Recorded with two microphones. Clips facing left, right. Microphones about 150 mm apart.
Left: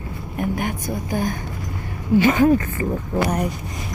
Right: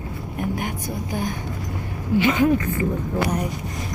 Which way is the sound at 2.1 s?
45° left (ahead or behind).